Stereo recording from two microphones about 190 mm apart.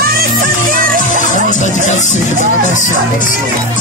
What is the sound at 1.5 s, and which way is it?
A man's voice, 40° left (ahead or behind).